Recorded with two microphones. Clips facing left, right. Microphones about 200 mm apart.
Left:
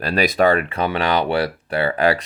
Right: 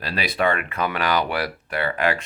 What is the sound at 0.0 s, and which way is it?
Speech, 45° left (ahead or behind).